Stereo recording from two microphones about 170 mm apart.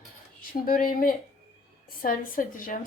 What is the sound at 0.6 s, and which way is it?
A woman's voice, 55° left (ahead or behind).